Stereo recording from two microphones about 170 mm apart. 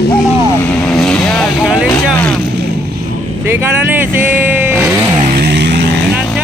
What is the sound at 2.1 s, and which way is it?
Speech, 10° left (ahead or behind).